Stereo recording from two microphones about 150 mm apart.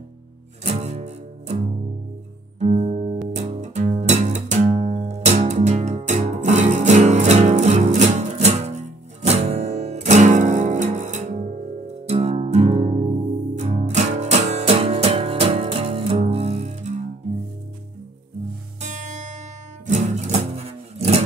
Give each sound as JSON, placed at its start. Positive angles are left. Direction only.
{"t": 0.7, "sound": "music", "side_deg": -45}
{"t": 2.6, "sound": "music", "side_deg": -45}
{"t": 18.8, "sound": "music", "side_deg": -55}